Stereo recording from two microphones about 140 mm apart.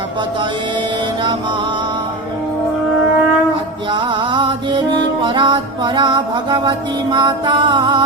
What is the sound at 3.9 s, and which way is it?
Music, 35° right (ahead or behind).